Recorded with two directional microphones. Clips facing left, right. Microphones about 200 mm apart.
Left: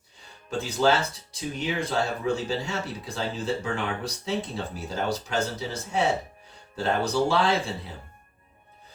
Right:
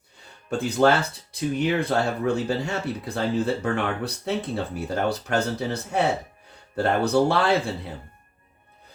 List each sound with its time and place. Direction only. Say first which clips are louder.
0.5 s speech: right 3 dB; 60° right (ahead or behind)